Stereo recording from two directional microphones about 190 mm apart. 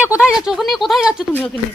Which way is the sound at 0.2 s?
5° right (ahead or behind).